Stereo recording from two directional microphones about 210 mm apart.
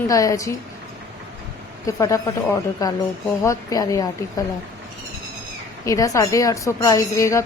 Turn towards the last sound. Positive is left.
turn(degrees=15)  # may be behind; listen again after turning